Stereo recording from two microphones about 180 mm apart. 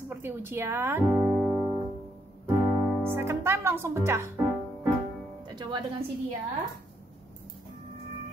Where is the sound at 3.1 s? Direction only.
15° right (ahead or behind).